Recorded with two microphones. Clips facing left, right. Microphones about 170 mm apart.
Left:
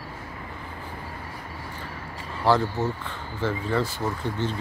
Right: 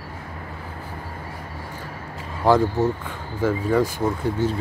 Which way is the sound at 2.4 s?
15° right (ahead or behind).